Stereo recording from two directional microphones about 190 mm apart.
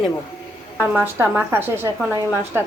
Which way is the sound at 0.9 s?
10° right (ahead or behind).